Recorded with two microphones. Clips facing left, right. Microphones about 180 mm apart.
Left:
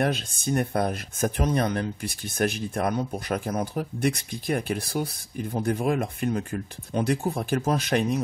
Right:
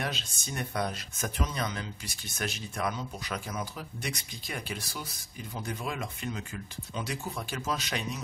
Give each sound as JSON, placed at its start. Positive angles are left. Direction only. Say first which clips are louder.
{"t": 0.0, "sound": "speech", "louder": "left 10 dB", "side_deg": 50}